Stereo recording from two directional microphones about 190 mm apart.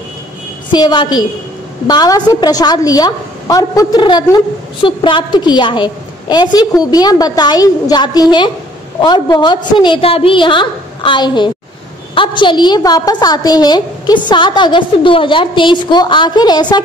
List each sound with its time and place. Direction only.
0.7 s a woman's voice: 20° left (ahead or behind)